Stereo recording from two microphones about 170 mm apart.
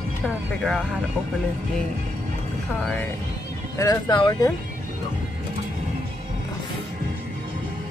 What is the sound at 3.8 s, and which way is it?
Speech, 25° left (ahead or behind).